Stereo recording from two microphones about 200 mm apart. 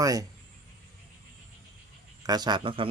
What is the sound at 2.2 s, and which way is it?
Speech, 20° right (ahead or behind).